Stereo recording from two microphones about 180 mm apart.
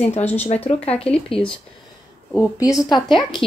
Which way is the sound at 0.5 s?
35° left (ahead or behind).